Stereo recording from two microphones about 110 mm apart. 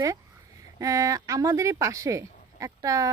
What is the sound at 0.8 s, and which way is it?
Speech, 30° right (ahead or behind).